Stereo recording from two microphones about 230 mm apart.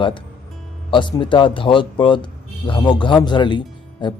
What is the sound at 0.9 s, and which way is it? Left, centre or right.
Speech, left.